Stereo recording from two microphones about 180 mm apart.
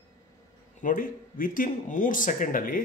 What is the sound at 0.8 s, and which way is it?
Speech, 50° left (ahead or behind).